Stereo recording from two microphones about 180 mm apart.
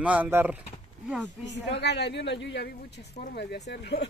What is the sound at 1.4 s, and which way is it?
A woman's voice, 75° left (ahead or behind).